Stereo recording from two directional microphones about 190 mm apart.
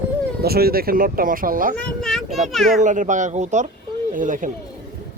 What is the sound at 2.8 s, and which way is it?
Speech, 40° right (ahead or behind).